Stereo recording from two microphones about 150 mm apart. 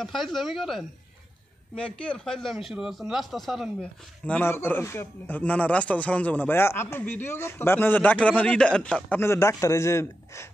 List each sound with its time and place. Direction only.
0.0 s speech: centre (ahead or behind)
2.0 s speech: 5° left (ahead or behind)
9.2 s a man's voice: 20° left (ahead or behind)